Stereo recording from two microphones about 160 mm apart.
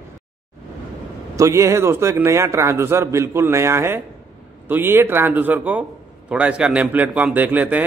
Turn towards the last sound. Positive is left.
turn(degrees=-10)  # may be behind; listen again after turning